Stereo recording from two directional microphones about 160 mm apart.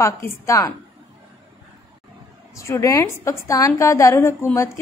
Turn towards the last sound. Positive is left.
turn(degrees=15)  # may be behind; listen again after turning